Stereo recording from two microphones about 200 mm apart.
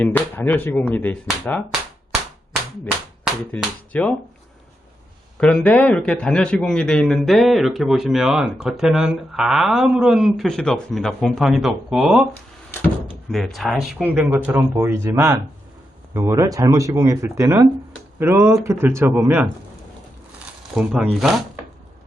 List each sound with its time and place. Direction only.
0.0 s speech: 10° left (ahead or behind)
3.5 s speech: 5° left (ahead or behind)
5.4 s a man's voice: 5° left (ahead or behind)
13.3 s a man's voice: centre (ahead or behind)
20.7 s a man's voice: 5° right (ahead or behind)